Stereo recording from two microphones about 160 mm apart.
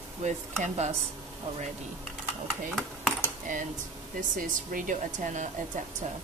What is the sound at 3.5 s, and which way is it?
Speech, 50° right (ahead or behind).